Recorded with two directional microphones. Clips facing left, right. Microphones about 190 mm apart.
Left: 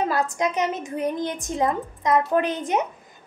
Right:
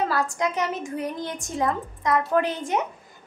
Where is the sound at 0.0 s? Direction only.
20° left (ahead or behind).